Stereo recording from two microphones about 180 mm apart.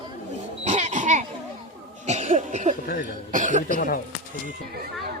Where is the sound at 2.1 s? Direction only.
40° right (ahead or behind).